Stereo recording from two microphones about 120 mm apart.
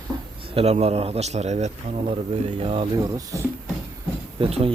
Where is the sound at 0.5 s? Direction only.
60° right (ahead or behind).